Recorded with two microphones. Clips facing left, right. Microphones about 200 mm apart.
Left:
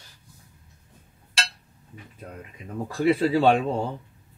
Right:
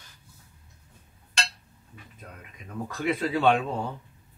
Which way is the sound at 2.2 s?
30° left (ahead or behind).